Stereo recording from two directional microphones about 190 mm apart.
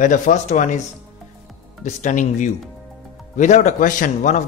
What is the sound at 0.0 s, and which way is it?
Speech, 40° left (ahead or behind).